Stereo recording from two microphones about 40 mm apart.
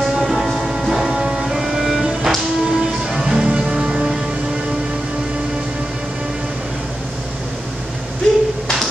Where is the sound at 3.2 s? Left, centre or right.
Centre.